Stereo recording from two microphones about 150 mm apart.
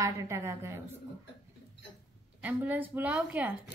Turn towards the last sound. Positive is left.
turn(degrees=-10)  # may be behind; listen again after turning